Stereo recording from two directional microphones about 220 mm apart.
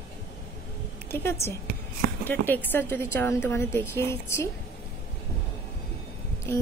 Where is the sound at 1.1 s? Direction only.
10° left (ahead or behind).